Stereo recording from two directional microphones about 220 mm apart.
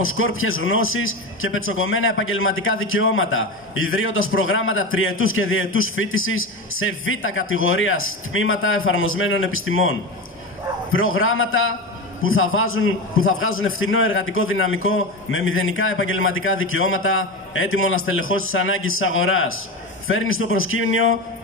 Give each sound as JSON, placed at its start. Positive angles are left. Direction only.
{"t": 0.0, "sound": "a man's voice", "side_deg": 70}